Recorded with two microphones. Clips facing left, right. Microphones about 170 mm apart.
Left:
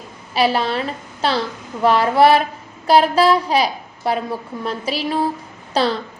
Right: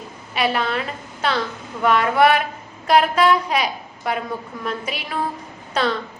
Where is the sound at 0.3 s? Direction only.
30° left (ahead or behind).